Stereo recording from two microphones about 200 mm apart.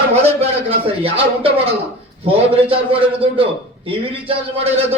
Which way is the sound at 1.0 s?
30° right (ahead or behind).